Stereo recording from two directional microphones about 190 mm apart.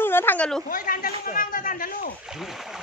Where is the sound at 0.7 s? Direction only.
50° left (ahead or behind).